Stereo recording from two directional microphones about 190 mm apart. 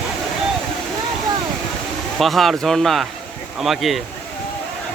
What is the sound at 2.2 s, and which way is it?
Speech, centre (ahead or behind).